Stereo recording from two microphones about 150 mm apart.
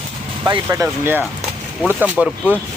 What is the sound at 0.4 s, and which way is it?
Speech, 25° right (ahead or behind).